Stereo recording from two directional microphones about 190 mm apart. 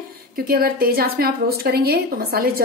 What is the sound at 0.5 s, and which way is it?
A woman's voice, 50° right (ahead or behind).